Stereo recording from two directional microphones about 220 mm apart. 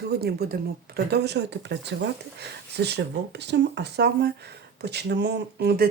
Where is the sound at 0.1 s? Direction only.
45° right (ahead or behind).